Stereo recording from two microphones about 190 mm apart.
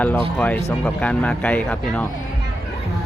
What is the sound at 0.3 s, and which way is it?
Speech, 10° left (ahead or behind).